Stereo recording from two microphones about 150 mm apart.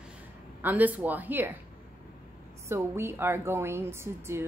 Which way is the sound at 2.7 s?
15° right (ahead or behind).